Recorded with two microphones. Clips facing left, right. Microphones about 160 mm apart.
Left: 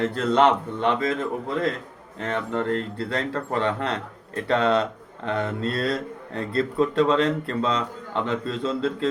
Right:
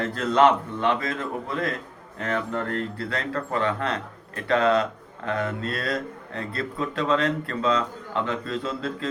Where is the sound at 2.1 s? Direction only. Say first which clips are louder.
Left 1 dB; 25° left (ahead or behind).